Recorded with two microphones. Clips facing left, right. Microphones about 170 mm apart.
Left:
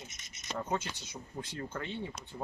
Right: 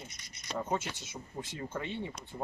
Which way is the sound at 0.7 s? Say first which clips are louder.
Even; centre (ahead or behind).